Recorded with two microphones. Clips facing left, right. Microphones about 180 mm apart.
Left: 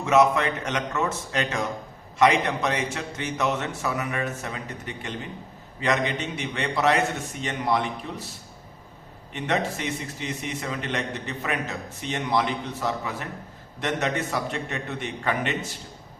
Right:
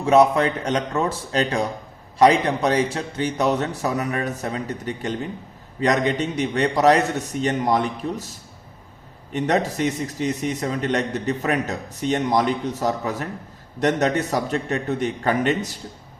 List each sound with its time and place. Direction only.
0.0 s a man's voice: 35° right (ahead or behind)
9.3 s a man's voice: 40° right (ahead or behind)